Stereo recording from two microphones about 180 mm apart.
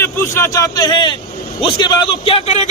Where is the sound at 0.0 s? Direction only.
15° left (ahead or behind).